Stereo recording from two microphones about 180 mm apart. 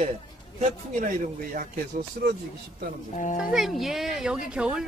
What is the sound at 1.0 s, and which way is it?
Speech, 50° right (ahead or behind).